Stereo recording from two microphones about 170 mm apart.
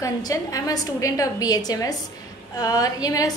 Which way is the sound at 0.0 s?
20° left (ahead or behind).